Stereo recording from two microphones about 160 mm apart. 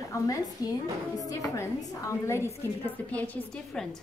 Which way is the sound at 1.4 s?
20° left (ahead or behind).